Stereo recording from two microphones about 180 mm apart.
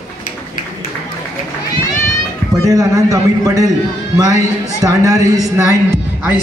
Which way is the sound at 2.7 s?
20° right (ahead or behind).